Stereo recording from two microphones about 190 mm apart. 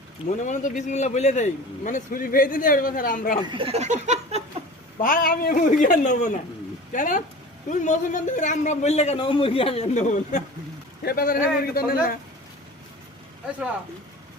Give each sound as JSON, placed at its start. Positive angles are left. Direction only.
{"t": 0.3, "sound": "a man's voice", "side_deg": 40}
{"t": 3.4, "sound": "a sound", "side_deg": -25}
{"t": 4.9, "sound": "a man's voice", "side_deg": 45}
{"t": 11.0, "sound": "a man's voice", "side_deg": 50}